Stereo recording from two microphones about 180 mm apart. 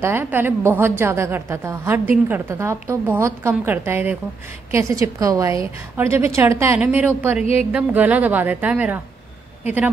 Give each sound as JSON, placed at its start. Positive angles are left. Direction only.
{"t": 0.0, "sound": "a woman's voice", "side_deg": -10}